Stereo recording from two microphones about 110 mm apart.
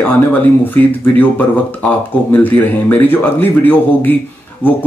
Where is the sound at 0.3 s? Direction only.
15° left (ahead or behind).